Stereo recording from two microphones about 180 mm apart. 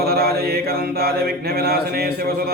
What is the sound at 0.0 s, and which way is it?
Mantra, 60° right (ahead or behind).